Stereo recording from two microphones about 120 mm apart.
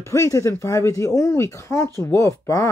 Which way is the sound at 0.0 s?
25° left (ahead or behind).